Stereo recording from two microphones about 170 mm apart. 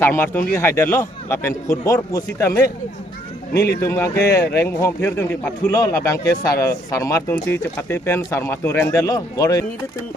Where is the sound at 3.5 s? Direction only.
65° left (ahead or behind).